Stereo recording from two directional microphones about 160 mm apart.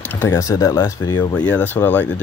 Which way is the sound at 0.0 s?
10° left (ahead or behind).